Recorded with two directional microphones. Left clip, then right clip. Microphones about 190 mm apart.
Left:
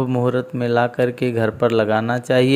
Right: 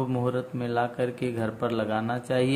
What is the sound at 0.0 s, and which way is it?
Speech, 35° left (ahead or behind).